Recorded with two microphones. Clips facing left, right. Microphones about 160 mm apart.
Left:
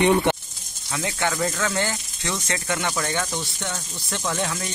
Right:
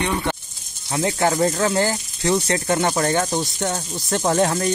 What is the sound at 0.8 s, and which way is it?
Speech, 35° right (ahead or behind).